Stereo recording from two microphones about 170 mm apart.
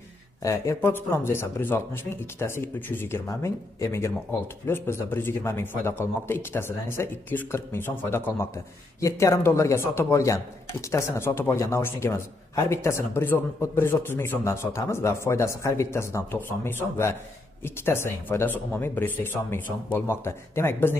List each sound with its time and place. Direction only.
0.4 s speech: 20° left (ahead or behind)